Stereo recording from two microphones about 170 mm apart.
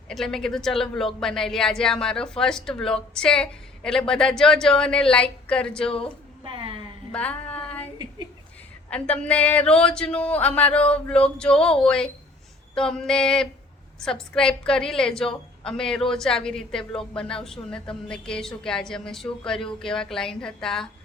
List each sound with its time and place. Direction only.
0.1 s a woman's voice: centre (ahead or behind)
6.4 s a sound: 30° right (ahead or behind)
7.1 s female singing: 5° left (ahead or behind)
8.9 s a woman's voice: 10° left (ahead or behind)